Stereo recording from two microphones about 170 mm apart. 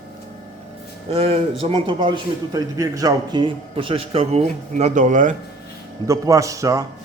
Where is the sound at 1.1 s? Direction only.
35° right (ahead or behind).